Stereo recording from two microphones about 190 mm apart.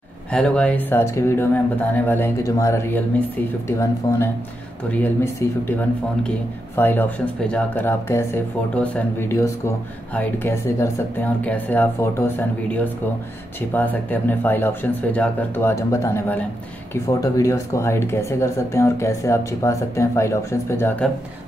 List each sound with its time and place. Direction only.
0.3 s speech: 5° left (ahead or behind)
4.0 s speech: 25° left (ahead or behind)
4.9 s speech: 10° left (ahead or behind)